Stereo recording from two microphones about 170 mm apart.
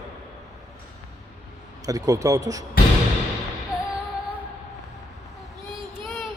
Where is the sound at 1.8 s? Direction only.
20° right (ahead or behind).